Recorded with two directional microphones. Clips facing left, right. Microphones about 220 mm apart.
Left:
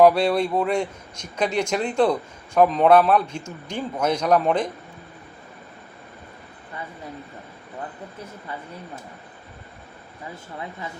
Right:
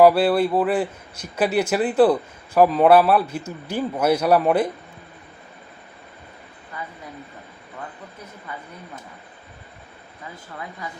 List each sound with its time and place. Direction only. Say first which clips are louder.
0.0 s a man's voice: right 2 dB; 5° right (ahead or behind)
6.8 s speech: right 1 dB; 30° left (ahead or behind)